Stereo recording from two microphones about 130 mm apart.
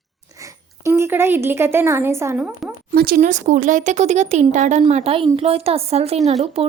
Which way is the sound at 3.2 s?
70° right (ahead or behind).